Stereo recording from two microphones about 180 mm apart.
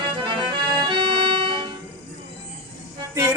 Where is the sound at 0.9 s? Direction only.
25° right (ahead or behind).